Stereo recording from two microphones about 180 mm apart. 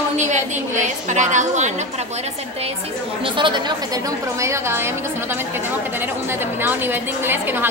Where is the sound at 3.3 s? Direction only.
25° right (ahead or behind).